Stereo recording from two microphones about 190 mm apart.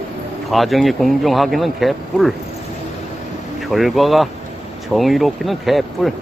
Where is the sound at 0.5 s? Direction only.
Centre (ahead or behind).